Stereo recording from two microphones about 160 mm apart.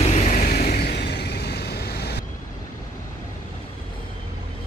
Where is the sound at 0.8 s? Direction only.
90° left.